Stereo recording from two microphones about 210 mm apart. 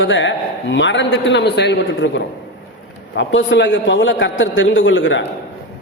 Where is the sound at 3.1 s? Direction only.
60° left (ahead or behind).